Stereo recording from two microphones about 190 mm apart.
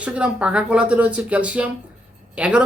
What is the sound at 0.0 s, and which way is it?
Speech, 5° right (ahead or behind).